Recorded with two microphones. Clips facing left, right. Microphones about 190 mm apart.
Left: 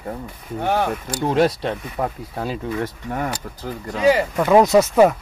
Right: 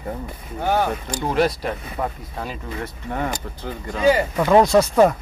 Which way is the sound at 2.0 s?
10° left (ahead or behind).